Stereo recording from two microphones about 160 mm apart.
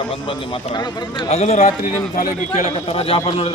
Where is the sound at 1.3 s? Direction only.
40° left (ahead or behind).